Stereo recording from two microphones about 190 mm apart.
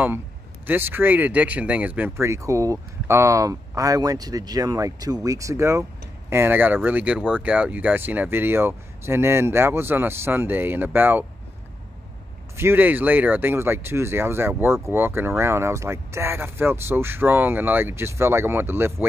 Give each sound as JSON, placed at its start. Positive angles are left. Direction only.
{"t": 0.7, "sound": "speech", "side_deg": -10}
{"t": 12.5, "sound": "speech", "side_deg": -10}